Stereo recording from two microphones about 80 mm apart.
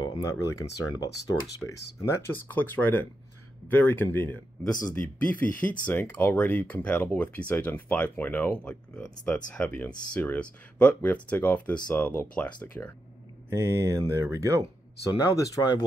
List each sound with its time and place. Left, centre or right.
0.0 s speech: left
8.9 s speech: centre
9.3 s speech: left
13.6 s speech: right
15.0 s speech: left